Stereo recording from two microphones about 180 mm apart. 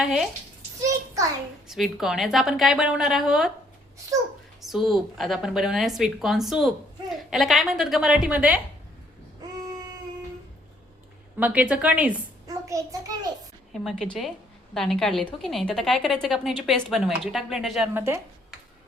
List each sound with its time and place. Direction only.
0.0 s a woman's voice: 5° right (ahead or behind)
0.8 s a sound: 20° right (ahead or behind)
1.6 s a woman's voice: centre (ahead or behind)
4.7 s a woman's voice: centre (ahead or behind)
11.3 s a woman's voice: 10° right (ahead or behind)
12.5 s child singing: 20° right (ahead or behind)
13.7 s a woman's voice: centre (ahead or behind)
17.9 s a woman's voice: 15° right (ahead or behind)